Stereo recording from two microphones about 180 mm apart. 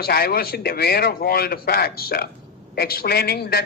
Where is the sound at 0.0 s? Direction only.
60° left (ahead or behind).